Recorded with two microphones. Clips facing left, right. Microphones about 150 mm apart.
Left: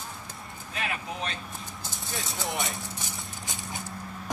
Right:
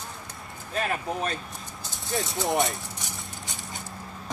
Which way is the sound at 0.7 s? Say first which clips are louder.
Right 6 dB; 45° right (ahead or behind).